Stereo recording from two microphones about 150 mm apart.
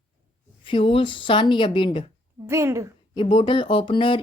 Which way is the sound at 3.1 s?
35° left (ahead or behind).